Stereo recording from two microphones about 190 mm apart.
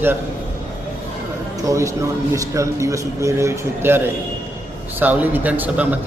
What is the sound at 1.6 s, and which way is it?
A man's voice, 15° right (ahead or behind).